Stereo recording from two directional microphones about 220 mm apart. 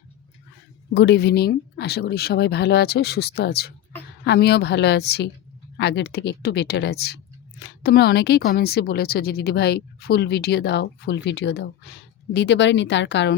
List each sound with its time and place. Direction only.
0.9 s a woman's voice: 50° left (ahead or behind)